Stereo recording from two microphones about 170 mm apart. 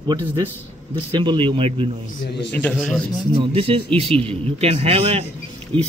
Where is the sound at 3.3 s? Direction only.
35° right (ahead or behind).